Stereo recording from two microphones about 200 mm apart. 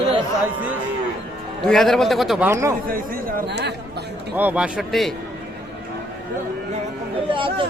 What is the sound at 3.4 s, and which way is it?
Speech, 60° right (ahead or behind).